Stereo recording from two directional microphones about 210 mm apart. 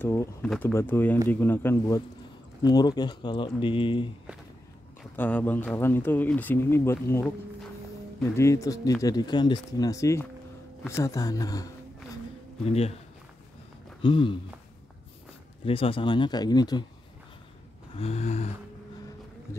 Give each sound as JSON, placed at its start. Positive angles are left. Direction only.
{"t": 0.0, "sound": "speech", "side_deg": 10}
{"t": 5.1, "sound": "speech", "side_deg": 10}
{"t": 12.6, "sound": "speech", "side_deg": 30}
{"t": 14.0, "sound": "speech", "side_deg": 25}
{"t": 15.6, "sound": "speech", "side_deg": 25}
{"t": 17.9, "sound": "a sound", "side_deg": 30}